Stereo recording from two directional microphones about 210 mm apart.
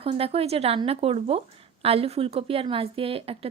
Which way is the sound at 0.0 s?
25° right (ahead or behind).